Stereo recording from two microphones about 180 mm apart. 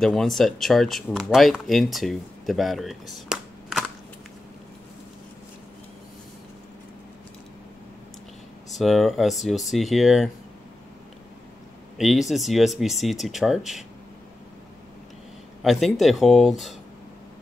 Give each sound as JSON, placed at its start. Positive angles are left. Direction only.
{"t": 0.0, "sound": "speech", "side_deg": 0}
{"t": 8.7, "sound": "speech", "side_deg": 0}
{"t": 12.0, "sound": "speech", "side_deg": 0}
{"t": 15.6, "sound": "speech", "side_deg": 0}